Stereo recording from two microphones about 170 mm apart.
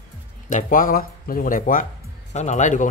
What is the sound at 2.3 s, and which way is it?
Speech, 45° left (ahead or behind).